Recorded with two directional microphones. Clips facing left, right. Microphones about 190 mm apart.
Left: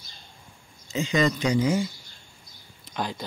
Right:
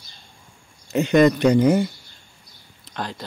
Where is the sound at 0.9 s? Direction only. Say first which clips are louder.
Right 8 dB; 60° right (ahead or behind).